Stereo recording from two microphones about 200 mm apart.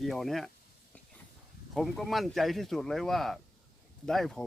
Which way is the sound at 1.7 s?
Centre (ahead or behind).